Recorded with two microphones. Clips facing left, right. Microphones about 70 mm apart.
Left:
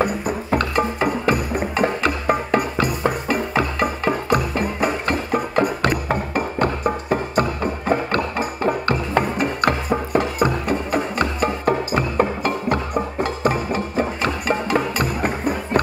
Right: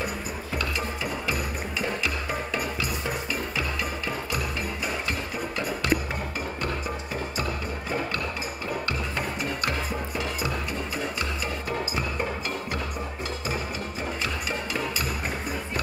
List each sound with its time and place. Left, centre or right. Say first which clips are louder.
0.0 s music: left 10 dB; left